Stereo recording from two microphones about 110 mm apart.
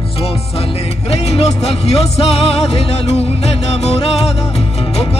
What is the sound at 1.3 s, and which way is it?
Music, 70° left (ahead or behind).